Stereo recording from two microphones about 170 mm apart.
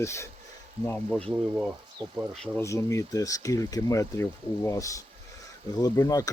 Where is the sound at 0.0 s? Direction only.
15° left (ahead or behind).